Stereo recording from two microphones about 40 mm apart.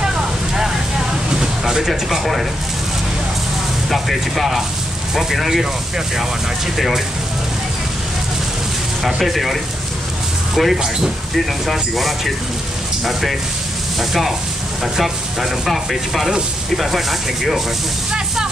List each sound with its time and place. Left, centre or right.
0.1 s a sound: centre
1.7 s speech: centre
3.9 s speech: centre
9.0 s speech: centre